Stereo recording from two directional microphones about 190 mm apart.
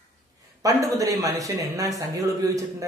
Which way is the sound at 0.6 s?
15° right (ahead or behind).